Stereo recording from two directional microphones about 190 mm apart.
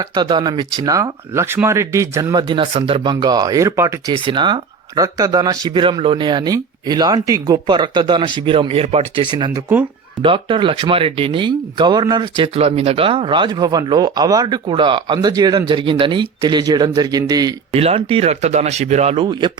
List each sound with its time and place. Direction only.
0.0 s speech: 25° right (ahead or behind)
17.7 s speech: 30° right (ahead or behind)